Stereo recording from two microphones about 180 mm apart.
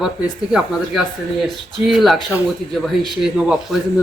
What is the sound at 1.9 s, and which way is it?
A man's voice, centre (ahead or behind).